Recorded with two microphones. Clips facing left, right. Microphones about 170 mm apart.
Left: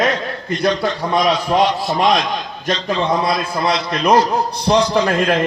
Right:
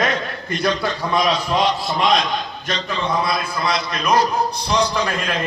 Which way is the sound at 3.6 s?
60° left (ahead or behind).